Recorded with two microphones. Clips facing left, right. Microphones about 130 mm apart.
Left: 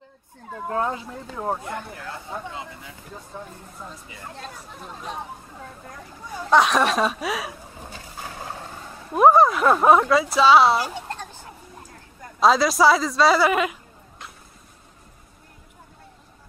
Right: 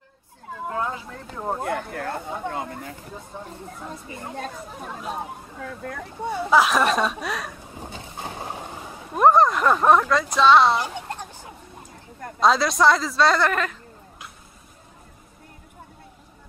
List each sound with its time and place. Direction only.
0.7 s speech: 30° left (ahead or behind)
1.2 s speech: 5° left (ahead or behind)
1.6 s speech: 60° right (ahead or behind)
3.3 s speech: 15° right (ahead or behind)
4.4 s speech: 55° right (ahead or behind)
5.6 s speech: 75° right (ahead or behind)
6.5 s speech: centre (ahead or behind)
7.8 s boat: 20° right (ahead or behind)
9.1 s speech: 5° left (ahead or behind)
11.0 s a sound: 15° right (ahead or behind)
12.4 s speech: centre (ahead or behind)